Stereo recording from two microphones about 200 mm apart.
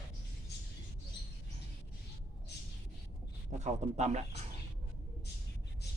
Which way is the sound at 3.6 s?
35° right (ahead or behind).